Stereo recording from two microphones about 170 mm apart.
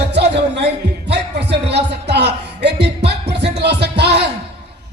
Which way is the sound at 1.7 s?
75° right (ahead or behind).